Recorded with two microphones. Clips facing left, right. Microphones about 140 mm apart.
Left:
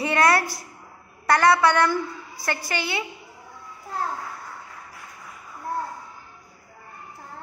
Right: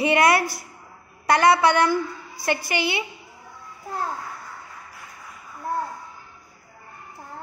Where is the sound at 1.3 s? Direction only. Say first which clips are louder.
Right 1 dB; 20° right (ahead or behind).